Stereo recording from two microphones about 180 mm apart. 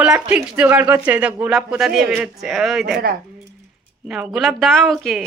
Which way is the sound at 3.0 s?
55° right (ahead or behind).